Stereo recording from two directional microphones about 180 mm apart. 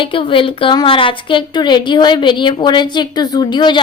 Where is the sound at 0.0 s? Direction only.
30° left (ahead or behind).